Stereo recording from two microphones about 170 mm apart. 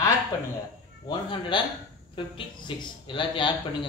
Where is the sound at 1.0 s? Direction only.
30° left (ahead or behind).